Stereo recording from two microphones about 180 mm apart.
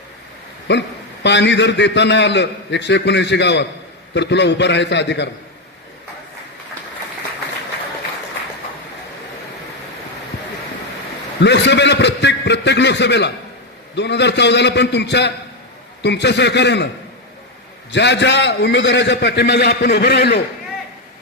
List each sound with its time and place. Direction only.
0.7 s a man's voice: 75° left (ahead or behind)
11.3 s a man's voice: 70° left (ahead or behind)
17.9 s a man's voice: 75° left (ahead or behind)